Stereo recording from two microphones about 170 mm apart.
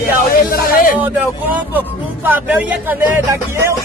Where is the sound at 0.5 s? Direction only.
55° left (ahead or behind).